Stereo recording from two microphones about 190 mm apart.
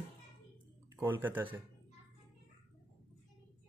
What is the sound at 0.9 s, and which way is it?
Speech, 10° right (ahead or behind).